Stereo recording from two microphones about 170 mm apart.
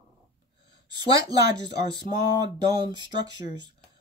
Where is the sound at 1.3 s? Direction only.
25° right (ahead or behind).